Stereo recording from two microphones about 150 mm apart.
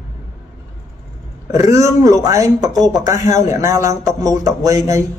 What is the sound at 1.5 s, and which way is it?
A man's voice, 20° right (ahead or behind).